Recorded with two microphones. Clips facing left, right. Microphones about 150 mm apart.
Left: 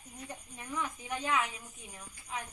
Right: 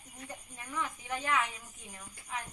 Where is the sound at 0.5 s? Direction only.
15° left (ahead or behind).